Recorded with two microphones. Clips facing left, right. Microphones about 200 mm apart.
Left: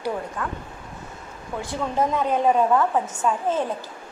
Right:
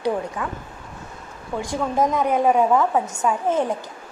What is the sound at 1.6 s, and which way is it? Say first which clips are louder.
A woman's voice: right 3 dB; 15° right (ahead or behind).